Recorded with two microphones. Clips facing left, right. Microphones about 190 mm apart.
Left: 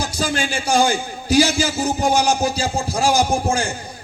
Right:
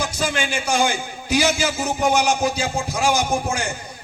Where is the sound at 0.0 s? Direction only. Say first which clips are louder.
Left 1 dB; 35° left (ahead or behind).